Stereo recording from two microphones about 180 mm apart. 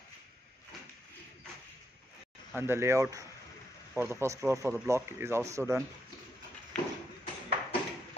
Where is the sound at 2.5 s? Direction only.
15° right (ahead or behind).